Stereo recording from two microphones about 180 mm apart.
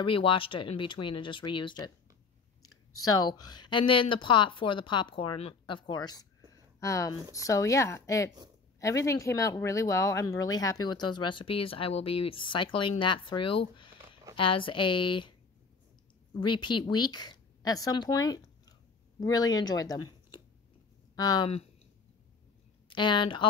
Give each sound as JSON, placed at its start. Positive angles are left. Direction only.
{"t": 0.0, "sound": "speech", "side_deg": 30}
{"t": 16.3, "sound": "speech", "side_deg": 25}
{"t": 21.2, "sound": "speech", "side_deg": 20}
{"t": 22.8, "sound": "speech", "side_deg": 25}